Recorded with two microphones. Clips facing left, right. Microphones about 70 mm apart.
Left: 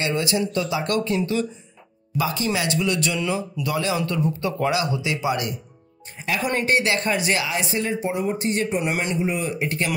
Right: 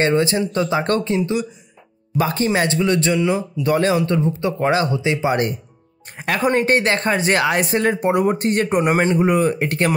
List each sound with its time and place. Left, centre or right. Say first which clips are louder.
0.0 s speech: right 6 dB; right
2.1 s speech: right 5 dB; right
4.0 s speech: right 4 dB; right
6.1 s speech: right 4 dB; right
6.4 s speech: right 5 dB; right
9.2 s speech: right 8 dB; right